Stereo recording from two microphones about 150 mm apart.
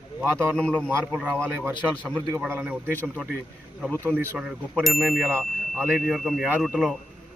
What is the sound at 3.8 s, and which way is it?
Speech, 15° right (ahead or behind).